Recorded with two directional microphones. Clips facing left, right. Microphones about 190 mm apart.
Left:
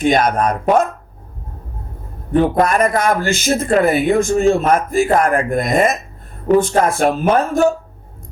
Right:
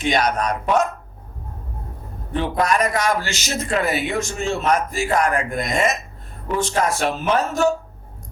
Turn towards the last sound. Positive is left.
turn(degrees=55)  # may be behind; listen again after turning